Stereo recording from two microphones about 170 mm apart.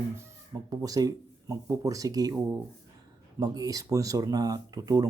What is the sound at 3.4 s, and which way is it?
A man's voice, 20° right (ahead or behind).